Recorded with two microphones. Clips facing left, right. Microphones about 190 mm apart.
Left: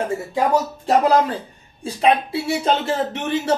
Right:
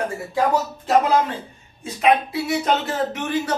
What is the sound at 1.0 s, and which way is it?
A man's voice, 35° left (ahead or behind).